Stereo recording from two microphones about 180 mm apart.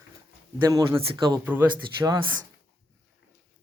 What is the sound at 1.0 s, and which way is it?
Speech, 20° right (ahead or behind).